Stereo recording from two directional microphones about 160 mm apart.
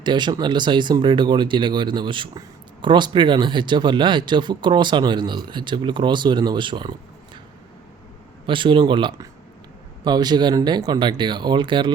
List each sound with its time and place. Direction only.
0.0 s speech: 30° right (ahead or behind)
8.4 s speech: 30° right (ahead or behind)